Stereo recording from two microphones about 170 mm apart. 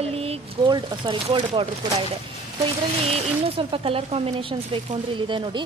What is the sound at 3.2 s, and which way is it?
Speech, 35° right (ahead or behind).